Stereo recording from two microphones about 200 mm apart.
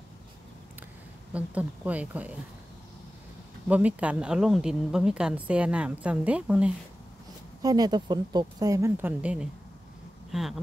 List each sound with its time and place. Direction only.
1.3 s speech: 5° right (ahead or behind)
3.6 s speech: 5° right (ahead or behind)
7.6 s speech: 20° right (ahead or behind); by 10.6 s centre (ahead or behind)